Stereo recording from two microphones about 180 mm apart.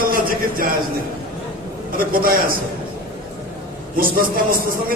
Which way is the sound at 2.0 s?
55° right (ahead or behind).